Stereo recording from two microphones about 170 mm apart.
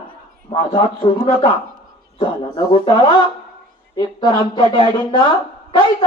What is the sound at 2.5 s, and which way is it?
Speech, 25° left (ahead or behind).